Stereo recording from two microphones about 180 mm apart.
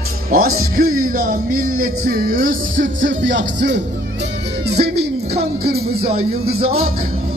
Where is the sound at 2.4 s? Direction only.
90° right.